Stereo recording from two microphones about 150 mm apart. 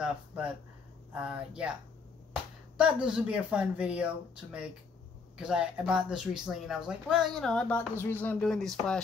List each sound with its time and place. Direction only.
0.0 s speech: 10° right (ahead or behind)
2.8 s speech: 5° right (ahead or behind)